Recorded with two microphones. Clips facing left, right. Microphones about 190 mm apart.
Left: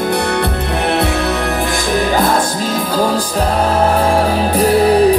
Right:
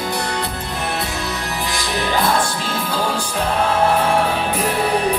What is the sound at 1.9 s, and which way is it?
Music, 45° left (ahead or behind).